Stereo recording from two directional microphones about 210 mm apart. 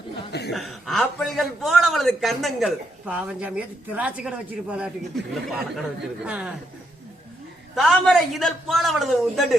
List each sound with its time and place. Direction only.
0.3 s chuckle: 50° left (ahead or behind)
0.5 s a man's voice: centre (ahead or behind)
7.8 s a man's voice: centre (ahead or behind)